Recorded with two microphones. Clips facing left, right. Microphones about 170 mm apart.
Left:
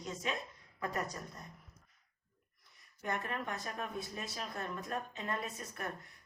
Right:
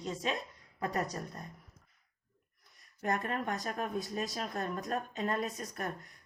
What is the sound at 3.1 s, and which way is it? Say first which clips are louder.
Speech: right 5 dB; 40° right (ahead or behind).